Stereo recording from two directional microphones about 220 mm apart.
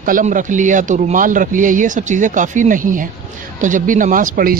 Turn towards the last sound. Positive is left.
turn(degrees=-40)  # may be behind; listen again after turning